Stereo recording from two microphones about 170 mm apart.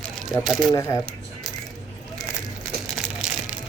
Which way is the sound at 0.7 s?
15° left (ahead or behind).